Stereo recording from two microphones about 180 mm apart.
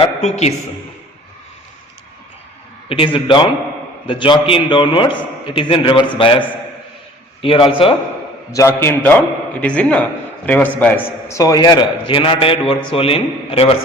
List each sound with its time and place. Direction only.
0.0 s a sound: 35° left (ahead or behind)
2.9 s a man's voice: 30° left (ahead or behind)
7.4 s a man's voice: 30° left (ahead or behind)
8.5 s a man's voice: 15° left (ahead or behind); by 13.7 s 30° left (ahead or behind)